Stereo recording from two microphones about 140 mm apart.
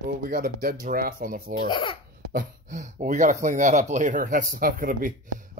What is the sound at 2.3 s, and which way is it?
Speech, 60° right (ahead or behind).